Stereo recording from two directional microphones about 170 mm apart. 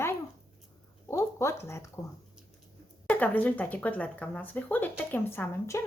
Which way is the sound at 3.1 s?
10° left (ahead or behind).